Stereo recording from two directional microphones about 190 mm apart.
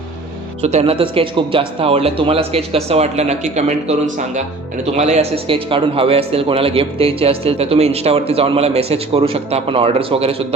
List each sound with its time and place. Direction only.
0.6 s a man's voice: 35° right (ahead or behind)